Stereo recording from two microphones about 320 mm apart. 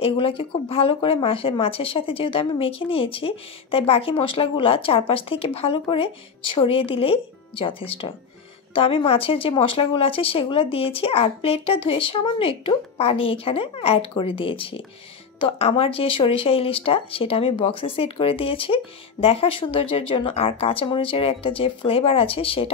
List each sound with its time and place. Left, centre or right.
0.0 s speech: centre